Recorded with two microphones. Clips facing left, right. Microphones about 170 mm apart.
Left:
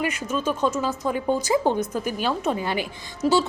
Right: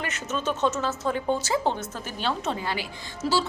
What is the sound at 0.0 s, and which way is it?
A woman's voice, 10° left (ahead or behind).